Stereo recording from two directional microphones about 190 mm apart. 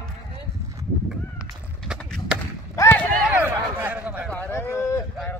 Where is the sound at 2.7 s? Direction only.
10° left (ahead or behind).